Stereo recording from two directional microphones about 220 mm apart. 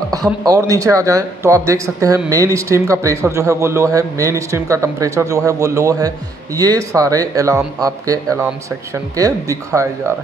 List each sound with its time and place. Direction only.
0.4 s speech: 15° right (ahead or behind)